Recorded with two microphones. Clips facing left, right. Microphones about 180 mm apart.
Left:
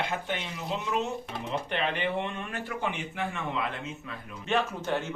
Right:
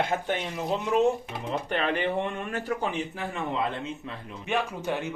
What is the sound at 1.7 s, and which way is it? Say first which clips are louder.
Speech: right 4 dB; 45° right (ahead or behind).